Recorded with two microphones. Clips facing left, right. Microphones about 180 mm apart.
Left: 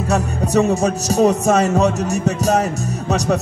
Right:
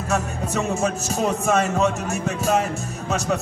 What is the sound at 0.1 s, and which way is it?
Music, 40° left (ahead or behind).